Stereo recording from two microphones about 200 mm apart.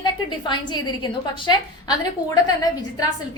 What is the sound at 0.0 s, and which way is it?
A woman's voice, 20° left (ahead or behind).